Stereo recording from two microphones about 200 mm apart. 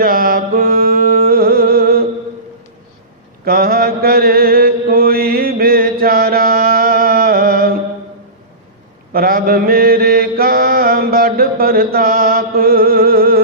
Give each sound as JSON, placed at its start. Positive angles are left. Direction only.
{"t": 0.0, "sound": "mantra", "side_deg": -45}
{"t": 3.4, "sound": "mantra", "side_deg": -45}
{"t": 9.1, "sound": "mantra", "side_deg": -45}